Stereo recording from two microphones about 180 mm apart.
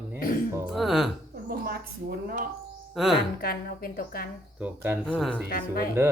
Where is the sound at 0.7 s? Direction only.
Centre (ahead or behind).